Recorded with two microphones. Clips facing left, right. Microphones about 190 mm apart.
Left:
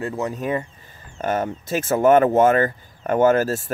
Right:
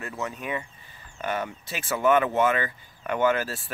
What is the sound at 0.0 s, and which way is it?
Speech, 35° left (ahead or behind).